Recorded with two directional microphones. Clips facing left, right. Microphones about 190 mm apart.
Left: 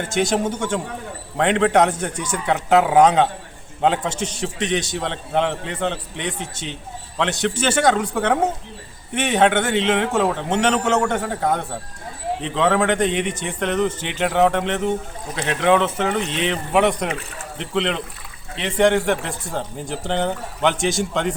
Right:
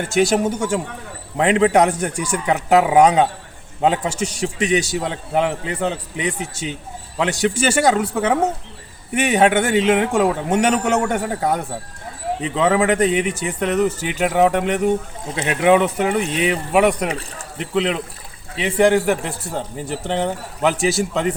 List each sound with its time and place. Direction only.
0.0 s a man's voice: 10° right (ahead or behind)
17.1 s speech: 35° right (ahead or behind)
17.6 s a man's voice: 5° right (ahead or behind)